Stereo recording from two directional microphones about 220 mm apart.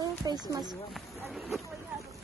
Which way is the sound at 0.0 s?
15° right (ahead or behind).